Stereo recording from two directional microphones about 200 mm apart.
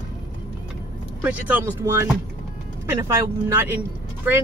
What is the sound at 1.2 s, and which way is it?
Speech, 10° right (ahead or behind).